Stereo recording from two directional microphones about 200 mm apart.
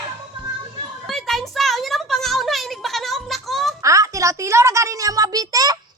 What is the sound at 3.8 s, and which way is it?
A child's voice, 15° right (ahead or behind).